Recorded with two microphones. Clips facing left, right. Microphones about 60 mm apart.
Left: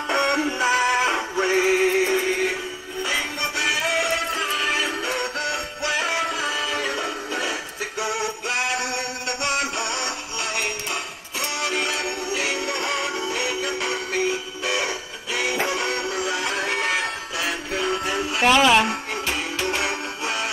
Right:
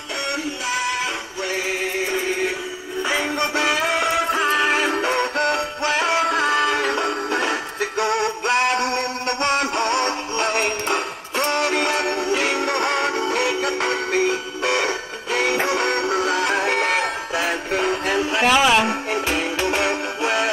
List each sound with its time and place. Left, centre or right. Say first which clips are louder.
0.1 s music: left 4 dB; left
3.3 s music: right 4 dB; right
6.3 s music: right 7 dB; right
17.4 s music: right 4 dB; right
18.4 s speech: left 1 dB; centre
19.2 s music: right 2 dB; right